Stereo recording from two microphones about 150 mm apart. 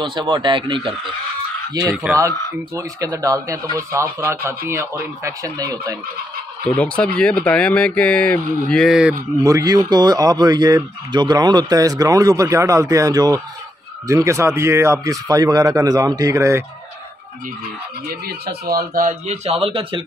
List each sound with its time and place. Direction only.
0.0 s speech: 30° right (ahead or behind)
1.8 s speech: 25° right (ahead or behind)
6.7 s speech: 5° left (ahead or behind)
9.4 s speech: 25° right (ahead or behind)
18.0 s speech: 90° right; by 20.1 s 35° right (ahead or behind)